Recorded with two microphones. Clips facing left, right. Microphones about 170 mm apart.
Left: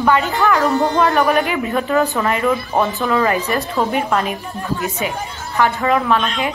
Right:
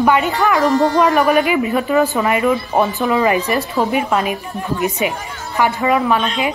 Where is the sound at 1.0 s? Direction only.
5° right (ahead or behind).